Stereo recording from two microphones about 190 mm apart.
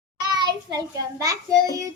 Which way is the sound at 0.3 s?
20° right (ahead or behind).